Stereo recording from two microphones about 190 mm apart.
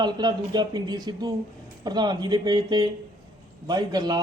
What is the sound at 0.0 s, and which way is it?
Speech, 20° right (ahead or behind).